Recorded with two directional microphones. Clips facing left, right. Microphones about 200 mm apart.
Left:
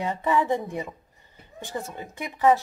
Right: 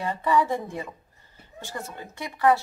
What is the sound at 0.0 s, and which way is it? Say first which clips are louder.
Speech: right 1 dB; 20° left (ahead or behind).